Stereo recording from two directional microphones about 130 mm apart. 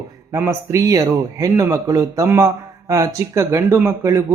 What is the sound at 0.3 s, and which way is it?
A man's voice, 20° right (ahead or behind).